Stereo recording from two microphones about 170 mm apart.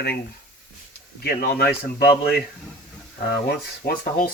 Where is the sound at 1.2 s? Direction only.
65° left (ahead or behind).